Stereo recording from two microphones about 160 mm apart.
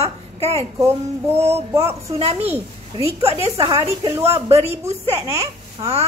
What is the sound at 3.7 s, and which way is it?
Speech, 25° right (ahead or behind).